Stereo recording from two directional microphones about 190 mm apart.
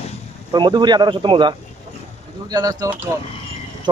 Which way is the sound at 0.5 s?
25° right (ahead or behind).